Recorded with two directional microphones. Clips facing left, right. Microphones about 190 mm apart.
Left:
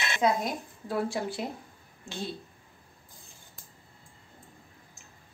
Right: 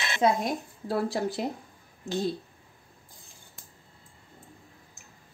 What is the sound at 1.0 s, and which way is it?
Speech, 35° right (ahead or behind).